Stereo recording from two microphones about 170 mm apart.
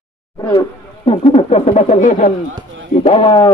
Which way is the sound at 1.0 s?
35° left (ahead or behind).